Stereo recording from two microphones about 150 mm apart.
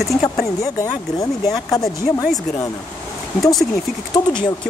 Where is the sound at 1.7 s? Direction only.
25° left (ahead or behind).